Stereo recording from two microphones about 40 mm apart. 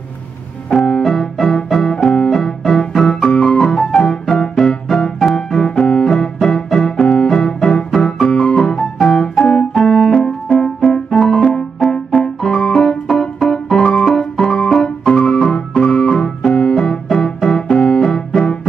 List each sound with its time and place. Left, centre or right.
0.7 s music: left
1.0 s music: centre
2.2 s keyboard: centre
3.2 s music: left
3.5 s piano: centre
6.7 s music: centre
7.9 s organ: centre
9.4 s piano: left
11.2 s music: centre
17.6 s piano: centre